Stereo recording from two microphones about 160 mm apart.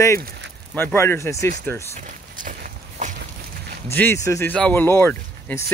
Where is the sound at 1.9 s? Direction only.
55° right (ahead or behind).